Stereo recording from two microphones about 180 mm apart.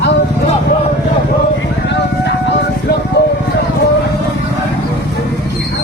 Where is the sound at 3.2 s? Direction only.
70° left (ahead or behind).